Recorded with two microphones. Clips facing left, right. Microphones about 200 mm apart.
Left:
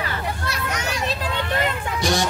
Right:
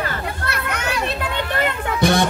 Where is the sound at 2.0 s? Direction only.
60° right (ahead or behind).